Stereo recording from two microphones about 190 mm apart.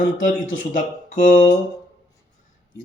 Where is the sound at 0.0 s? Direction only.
40° left (ahead or behind).